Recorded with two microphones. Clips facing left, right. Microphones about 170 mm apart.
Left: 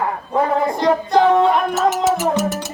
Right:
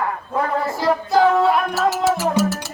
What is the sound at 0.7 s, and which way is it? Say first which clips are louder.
Singing: left 3 dB; 5° right (ahead or behind).